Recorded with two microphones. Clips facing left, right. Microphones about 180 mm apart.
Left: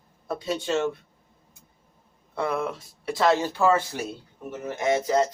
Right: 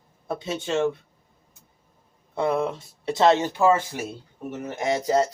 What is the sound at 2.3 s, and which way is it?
A man's voice, 25° right (ahead or behind).